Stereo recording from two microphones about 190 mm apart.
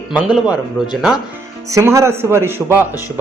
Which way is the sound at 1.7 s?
15° right (ahead or behind).